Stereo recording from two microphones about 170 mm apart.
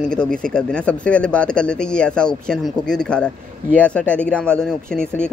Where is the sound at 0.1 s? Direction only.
5° left (ahead or behind).